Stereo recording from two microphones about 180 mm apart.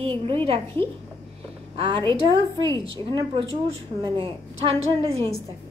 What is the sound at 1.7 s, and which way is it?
A woman's voice, 30° right (ahead or behind).